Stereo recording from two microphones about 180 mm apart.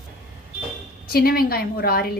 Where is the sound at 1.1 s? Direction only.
55° left (ahead or behind).